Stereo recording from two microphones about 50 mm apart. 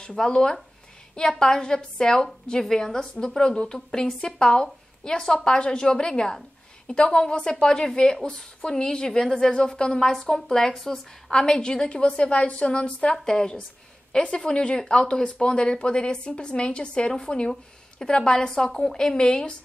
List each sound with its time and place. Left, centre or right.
0.0 s a woman's voice: centre